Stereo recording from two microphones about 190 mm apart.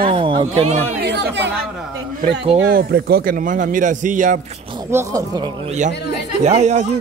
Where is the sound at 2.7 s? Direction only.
50° right (ahead or behind).